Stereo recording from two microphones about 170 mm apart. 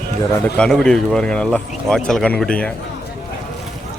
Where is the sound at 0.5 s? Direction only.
5° left (ahead or behind).